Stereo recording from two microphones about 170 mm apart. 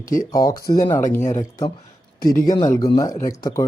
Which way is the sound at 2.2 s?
60° left (ahead or behind).